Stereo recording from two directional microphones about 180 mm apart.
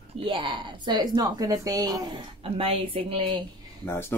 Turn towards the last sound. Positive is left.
turn(degrees=15)  # may be behind; listen again after turning